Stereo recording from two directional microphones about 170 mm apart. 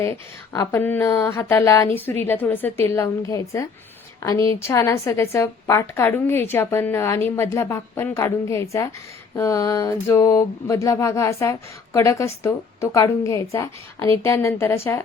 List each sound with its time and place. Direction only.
0.0 s a woman's voice: 15° left (ahead or behind)